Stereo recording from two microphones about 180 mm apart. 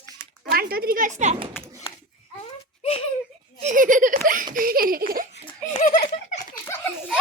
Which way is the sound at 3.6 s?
45° right (ahead or behind).